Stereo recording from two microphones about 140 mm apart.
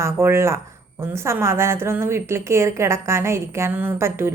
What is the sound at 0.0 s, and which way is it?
A woman's voice, 20° right (ahead or behind).